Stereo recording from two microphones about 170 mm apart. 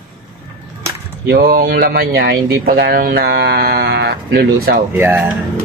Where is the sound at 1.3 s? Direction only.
60° right (ahead or behind).